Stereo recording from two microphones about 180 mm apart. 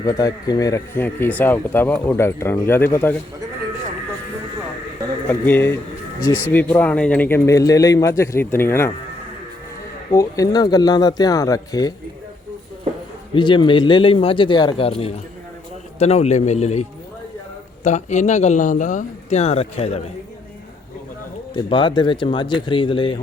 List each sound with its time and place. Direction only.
0.0 s speech: 20° left (ahead or behind)
5.3 s speech: 10° left (ahead or behind)
10.1 s speech: 20° left (ahead or behind)
13.3 s speech: 25° left (ahead or behind)
17.8 s speech: 40° left (ahead or behind)
21.5 s speech: 25° left (ahead or behind)